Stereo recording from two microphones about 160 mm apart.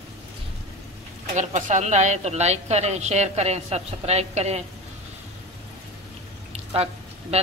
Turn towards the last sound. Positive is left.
turn(degrees=-40)  # may be behind; listen again after turning